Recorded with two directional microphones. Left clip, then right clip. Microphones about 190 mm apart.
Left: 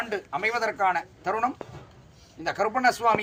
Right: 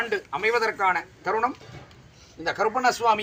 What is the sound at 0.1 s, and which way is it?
Speech, 50° left (ahead or behind).